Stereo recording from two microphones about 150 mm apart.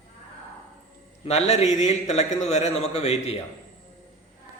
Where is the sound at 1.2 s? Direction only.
45° left (ahead or behind).